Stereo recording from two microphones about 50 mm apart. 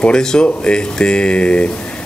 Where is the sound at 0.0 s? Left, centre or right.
Centre.